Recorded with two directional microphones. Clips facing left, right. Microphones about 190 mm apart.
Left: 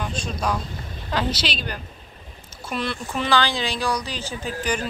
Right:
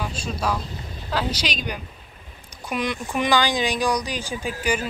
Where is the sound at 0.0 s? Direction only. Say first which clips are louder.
Even; 5° right (ahead or behind).